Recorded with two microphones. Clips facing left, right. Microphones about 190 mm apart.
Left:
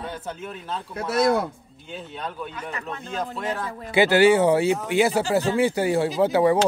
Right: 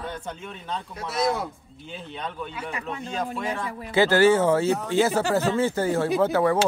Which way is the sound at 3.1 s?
Centre (ahead or behind).